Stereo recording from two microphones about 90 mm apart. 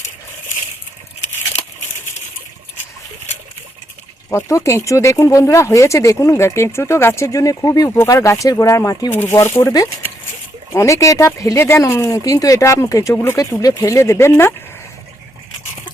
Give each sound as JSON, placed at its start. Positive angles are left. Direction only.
{"t": 4.3, "sound": "speech", "side_deg": 30}
{"t": 9.3, "sound": "speech", "side_deg": 35}